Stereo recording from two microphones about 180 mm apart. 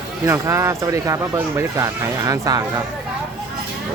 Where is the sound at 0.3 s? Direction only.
15° right (ahead or behind).